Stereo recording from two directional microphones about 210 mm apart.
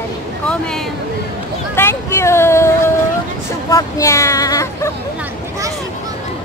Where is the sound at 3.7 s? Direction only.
15° left (ahead or behind).